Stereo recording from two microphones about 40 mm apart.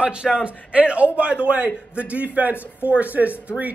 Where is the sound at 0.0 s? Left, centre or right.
Right.